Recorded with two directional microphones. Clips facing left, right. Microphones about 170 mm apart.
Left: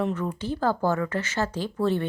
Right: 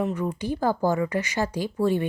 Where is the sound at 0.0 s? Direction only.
15° right (ahead or behind).